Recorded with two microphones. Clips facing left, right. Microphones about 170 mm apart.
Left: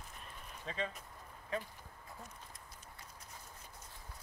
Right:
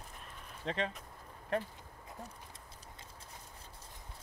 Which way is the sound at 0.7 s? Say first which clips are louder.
Right 4 dB; 75° right (ahead or behind).